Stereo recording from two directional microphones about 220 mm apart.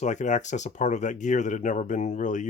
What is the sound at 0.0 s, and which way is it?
Speech, 35° left (ahead or behind).